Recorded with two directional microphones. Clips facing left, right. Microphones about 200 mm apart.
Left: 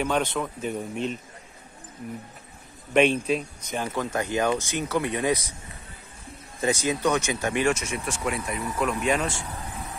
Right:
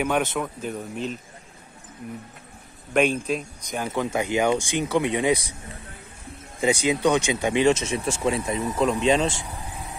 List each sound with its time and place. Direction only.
0.4 s speech: centre (ahead or behind)
2.9 s speech: 5° right (ahead or behind)
4.0 s speech: 15° right (ahead or behind)
6.6 s speech: 15° right (ahead or behind)